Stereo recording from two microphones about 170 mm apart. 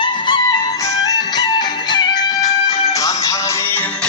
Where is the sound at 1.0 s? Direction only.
25° left (ahead or behind).